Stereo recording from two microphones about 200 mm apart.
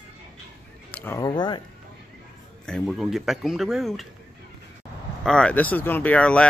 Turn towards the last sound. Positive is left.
turn(degrees=5)  # may be behind; listen again after turning